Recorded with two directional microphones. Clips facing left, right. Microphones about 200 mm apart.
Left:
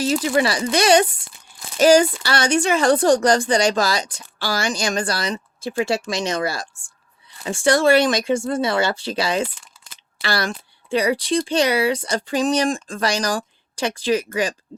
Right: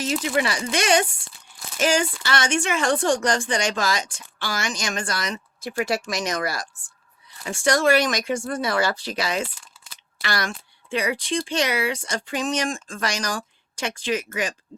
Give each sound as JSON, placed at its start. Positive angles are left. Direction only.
{"t": 0.0, "sound": "a woman's voice", "side_deg": 35}